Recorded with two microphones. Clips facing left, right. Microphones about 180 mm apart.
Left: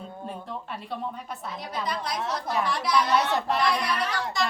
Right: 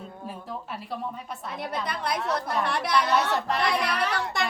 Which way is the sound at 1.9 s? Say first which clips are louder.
Right 1 dB; 60° right (ahead or behind).